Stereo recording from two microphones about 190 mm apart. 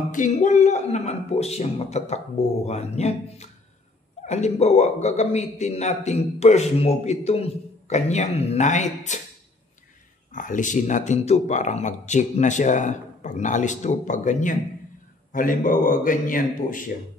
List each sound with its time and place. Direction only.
0.1 s a man's voice: 40° left (ahead or behind)
10.3 s a man's voice: 45° left (ahead or behind)